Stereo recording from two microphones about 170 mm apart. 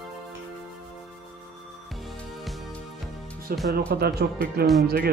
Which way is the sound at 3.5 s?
60° right (ahead or behind).